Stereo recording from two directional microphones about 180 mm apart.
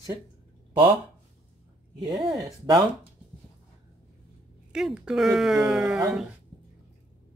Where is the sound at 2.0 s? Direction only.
25° right (ahead or behind).